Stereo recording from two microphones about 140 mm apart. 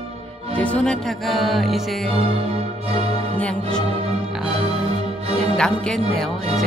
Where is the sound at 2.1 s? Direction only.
45° right (ahead or behind).